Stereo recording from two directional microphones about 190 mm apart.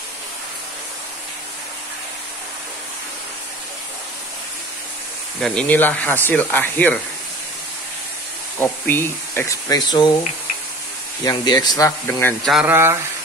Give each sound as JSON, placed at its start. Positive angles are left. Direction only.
{"t": 5.4, "sound": "speech", "side_deg": 5}
{"t": 8.5, "sound": "speech", "side_deg": 10}
{"t": 11.2, "sound": "speech", "side_deg": 20}
{"t": 12.4, "sound": "speech", "side_deg": -5}